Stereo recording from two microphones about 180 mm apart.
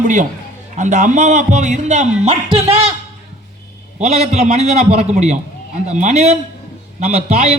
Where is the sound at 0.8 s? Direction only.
40° right (ahead or behind).